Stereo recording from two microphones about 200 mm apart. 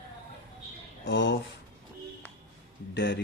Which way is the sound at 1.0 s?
65° left (ahead or behind).